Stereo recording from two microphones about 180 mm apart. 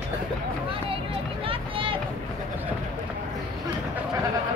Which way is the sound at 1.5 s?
30° right (ahead or behind).